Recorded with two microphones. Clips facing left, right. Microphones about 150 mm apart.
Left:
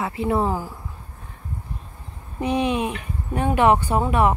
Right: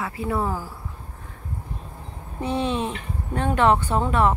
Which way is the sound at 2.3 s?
15° left (ahead or behind).